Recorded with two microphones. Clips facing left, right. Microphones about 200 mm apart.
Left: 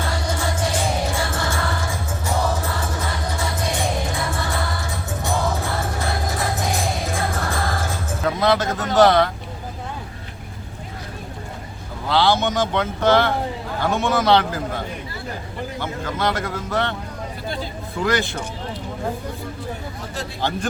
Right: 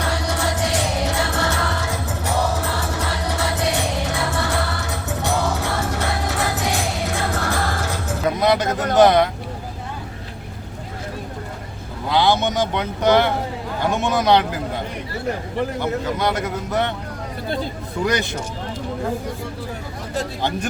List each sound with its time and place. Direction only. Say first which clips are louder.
0.0 s music: right 2 dB; 70° right (ahead or behind)
8.4 s speech: even; 15° right (ahead or behind)
12.0 s speech: even; 15° right (ahead or behind)
15.8 s speech: left 1 dB; 15° right (ahead or behind)